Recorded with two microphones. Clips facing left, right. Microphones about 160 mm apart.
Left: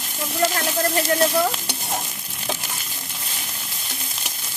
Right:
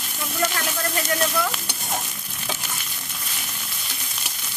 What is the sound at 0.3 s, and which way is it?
Sizzle, 35° left (ahead or behind).